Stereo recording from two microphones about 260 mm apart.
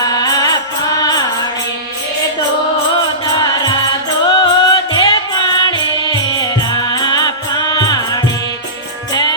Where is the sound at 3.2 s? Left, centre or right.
Centre.